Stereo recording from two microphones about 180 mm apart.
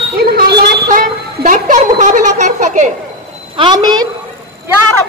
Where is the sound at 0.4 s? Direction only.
60° right (ahead or behind); by 2.9 s 40° right (ahead or behind).